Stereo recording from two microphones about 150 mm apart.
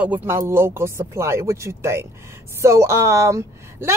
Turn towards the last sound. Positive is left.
turn(degrees=-20)  # may be behind; listen again after turning